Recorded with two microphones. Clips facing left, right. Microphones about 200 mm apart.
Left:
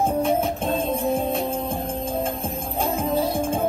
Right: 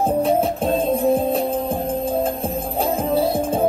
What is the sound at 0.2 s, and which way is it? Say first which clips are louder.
Music: right 4 dB; 35° right (ahead or behind).